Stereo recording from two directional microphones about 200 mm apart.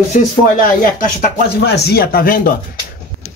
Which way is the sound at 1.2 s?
55° left (ahead or behind).